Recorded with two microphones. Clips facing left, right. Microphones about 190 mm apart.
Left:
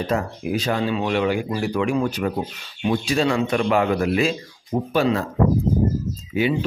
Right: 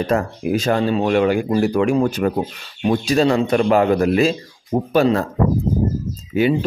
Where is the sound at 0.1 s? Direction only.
50° right (ahead or behind).